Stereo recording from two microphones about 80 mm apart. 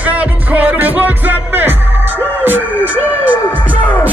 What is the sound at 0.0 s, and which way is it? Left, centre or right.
Music, centre.